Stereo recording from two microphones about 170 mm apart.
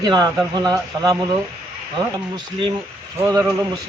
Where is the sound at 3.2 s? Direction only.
20° right (ahead or behind).